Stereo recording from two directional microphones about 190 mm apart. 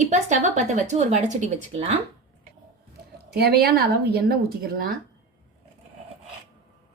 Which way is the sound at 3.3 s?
55° right (ahead or behind).